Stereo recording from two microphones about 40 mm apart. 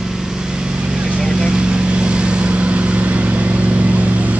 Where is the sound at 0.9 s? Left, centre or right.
Right.